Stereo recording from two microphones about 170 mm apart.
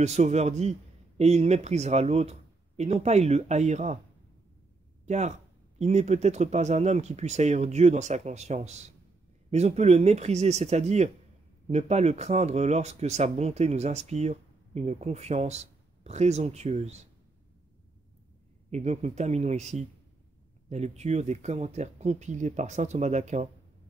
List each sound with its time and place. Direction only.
0.0 s speech: 40° right (ahead or behind)
5.0 s speech: 40° right (ahead or behind)
18.7 s speech: 40° right (ahead or behind)